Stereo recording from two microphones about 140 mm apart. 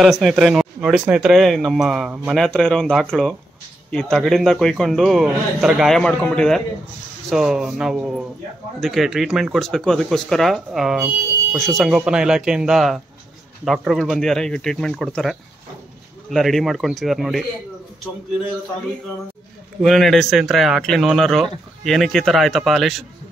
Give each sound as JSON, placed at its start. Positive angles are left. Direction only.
{"t": 0.0, "sound": "speech", "side_deg": 0}
{"t": 19.8, "sound": "speech", "side_deg": 0}